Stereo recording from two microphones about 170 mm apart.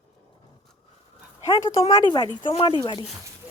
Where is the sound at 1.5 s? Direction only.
25° left (ahead or behind).